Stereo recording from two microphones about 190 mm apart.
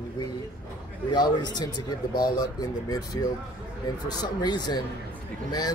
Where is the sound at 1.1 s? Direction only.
20° left (ahead or behind).